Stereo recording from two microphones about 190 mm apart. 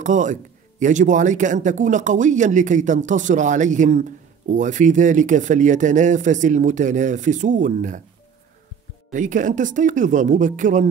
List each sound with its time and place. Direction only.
0.0 s speech: 40° right (ahead or behind)
9.1 s speech: 40° right (ahead or behind)